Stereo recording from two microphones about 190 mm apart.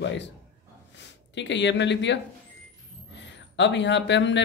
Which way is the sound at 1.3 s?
70° left (ahead or behind).